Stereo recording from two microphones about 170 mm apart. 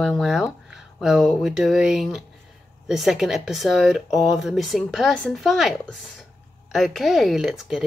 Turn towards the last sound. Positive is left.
turn(degrees=0)  # may be behind; listen again after turning